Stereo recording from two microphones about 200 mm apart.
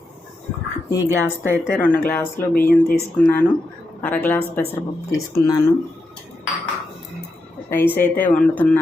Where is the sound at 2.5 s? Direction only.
45° left (ahead or behind).